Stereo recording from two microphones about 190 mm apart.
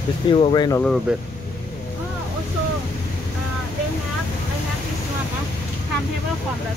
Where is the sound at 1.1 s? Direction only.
5° right (ahead or behind).